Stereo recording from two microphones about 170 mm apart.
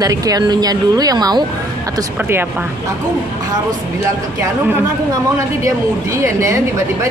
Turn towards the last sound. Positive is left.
turn(degrees=-15)  # may be behind; listen again after turning